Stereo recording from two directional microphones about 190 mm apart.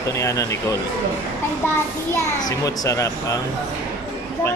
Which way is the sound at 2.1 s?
15° left (ahead or behind).